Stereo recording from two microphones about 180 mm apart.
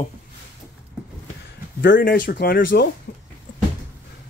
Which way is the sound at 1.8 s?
55° left (ahead or behind).